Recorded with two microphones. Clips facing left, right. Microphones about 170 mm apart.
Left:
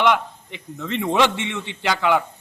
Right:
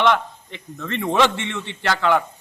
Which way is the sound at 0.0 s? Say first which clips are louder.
Even; 15° left (ahead or behind).